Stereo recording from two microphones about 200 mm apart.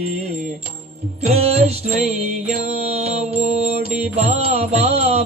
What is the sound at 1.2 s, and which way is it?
Music, 30° right (ahead or behind).